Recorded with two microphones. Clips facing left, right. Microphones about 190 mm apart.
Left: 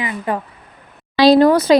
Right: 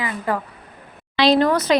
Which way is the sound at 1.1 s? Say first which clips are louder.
Left 6 dB; 35° left (ahead or behind).